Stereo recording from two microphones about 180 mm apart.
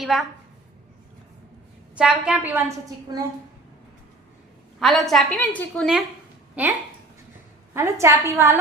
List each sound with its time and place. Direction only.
0.0 s a woman's voice: centre (ahead or behind)
2.0 s a woman's voice: 5° right (ahead or behind)
3.1 s a woman's voice: 20° right (ahead or behind)
4.8 s a woman's voice: centre (ahead or behind)
7.7 s a woman's voice: 15° right (ahead or behind)